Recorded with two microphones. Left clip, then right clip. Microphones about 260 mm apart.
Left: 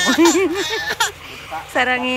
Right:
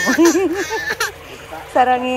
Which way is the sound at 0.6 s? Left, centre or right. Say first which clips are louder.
Even; centre.